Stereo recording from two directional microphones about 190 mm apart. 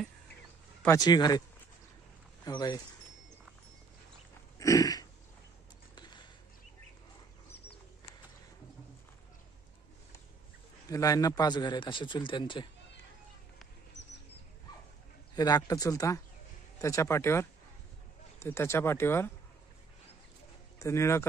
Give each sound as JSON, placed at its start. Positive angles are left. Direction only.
{"t": 0.8, "sound": "a man's voice", "side_deg": 20}
{"t": 2.4, "sound": "a man's voice", "side_deg": 20}
{"t": 4.6, "sound": "throat clearing", "side_deg": 15}
{"t": 5.9, "sound": "a sound", "side_deg": 25}
{"t": 10.9, "sound": "a man's voice", "side_deg": 15}
{"t": 15.3, "sound": "a man's voice", "side_deg": 20}
{"t": 20.8, "sound": "speech", "side_deg": 15}